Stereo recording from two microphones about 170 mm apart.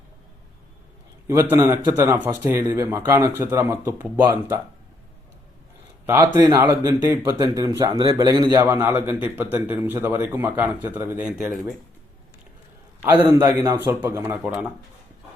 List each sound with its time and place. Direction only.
1.3 s a man's voice: 15° right (ahead or behind)
6.2 s a man's voice: 25° right (ahead or behind); by 11.6 s 5° right (ahead or behind)
13.0 s a man's voice: 10° right (ahead or behind)